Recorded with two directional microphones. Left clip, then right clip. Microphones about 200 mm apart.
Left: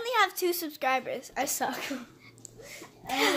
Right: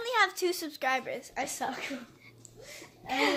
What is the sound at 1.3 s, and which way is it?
Speech, 30° left (ahead or behind).